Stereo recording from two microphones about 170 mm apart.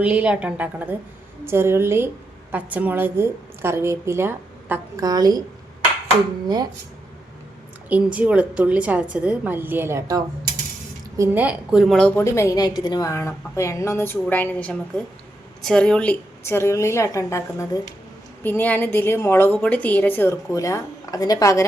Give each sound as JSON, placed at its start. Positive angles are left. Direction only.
{"t": 0.0, "sound": "a woman's voice", "side_deg": -5}
{"t": 7.9, "sound": "a woman's voice", "side_deg": -10}
{"t": 12.2, "sound": "a woman's voice", "side_deg": 15}